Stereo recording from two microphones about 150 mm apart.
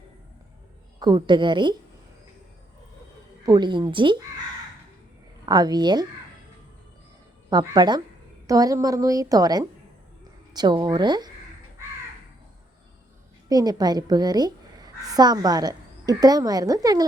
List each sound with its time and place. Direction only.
0.9 s a woman's voice: 30° right (ahead or behind)
3.4 s a woman's voice: 30° right (ahead or behind)
5.5 s a woman's voice: 25° right (ahead or behind)
7.5 s a woman's voice: 25° right (ahead or behind)
13.5 s a woman's voice: 25° right (ahead or behind)